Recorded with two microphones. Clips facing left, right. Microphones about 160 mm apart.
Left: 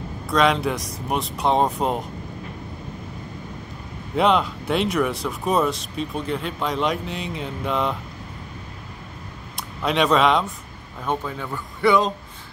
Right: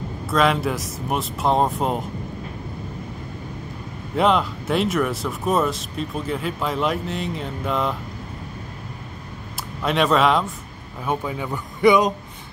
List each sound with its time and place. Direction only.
0.3 s speech: centre (ahead or behind)
4.1 s speech: centre (ahead or behind)
9.6 s speech: centre (ahead or behind)